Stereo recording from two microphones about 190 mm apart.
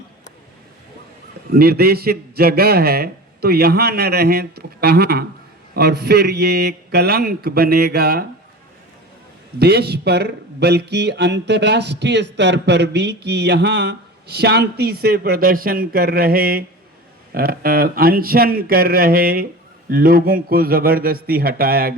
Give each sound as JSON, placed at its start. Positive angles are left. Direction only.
{"t": 1.5, "sound": "speech", "side_deg": -55}
{"t": 9.6, "sound": "speech", "side_deg": -60}